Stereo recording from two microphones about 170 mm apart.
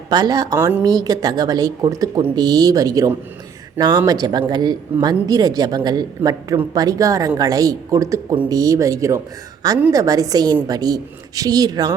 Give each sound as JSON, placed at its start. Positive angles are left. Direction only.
{"t": 0.1, "sound": "speech", "side_deg": -25}